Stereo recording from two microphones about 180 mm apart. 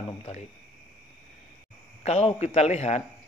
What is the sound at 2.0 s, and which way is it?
A man's voice, 35° left (ahead or behind).